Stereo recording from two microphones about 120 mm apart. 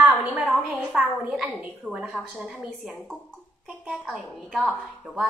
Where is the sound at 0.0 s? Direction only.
15° right (ahead or behind).